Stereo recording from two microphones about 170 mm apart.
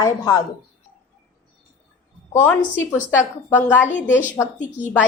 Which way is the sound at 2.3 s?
15° left (ahead or behind).